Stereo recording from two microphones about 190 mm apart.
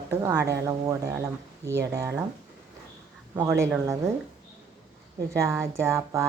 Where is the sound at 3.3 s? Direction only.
15° right (ahead or behind).